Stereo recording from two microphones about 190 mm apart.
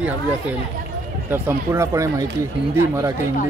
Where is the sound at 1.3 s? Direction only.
15° right (ahead or behind).